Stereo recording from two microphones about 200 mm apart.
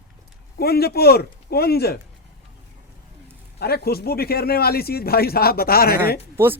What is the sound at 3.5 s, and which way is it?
Speech, 50° left (ahead or behind).